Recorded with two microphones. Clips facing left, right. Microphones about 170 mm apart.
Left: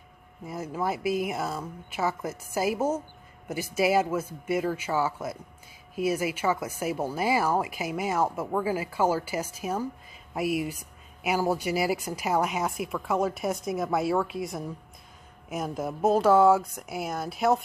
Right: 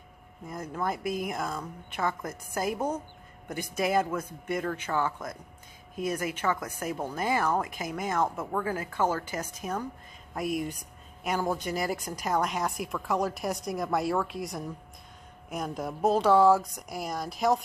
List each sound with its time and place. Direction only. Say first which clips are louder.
0.5 s speech: left 2 dB; 5° left (ahead or behind)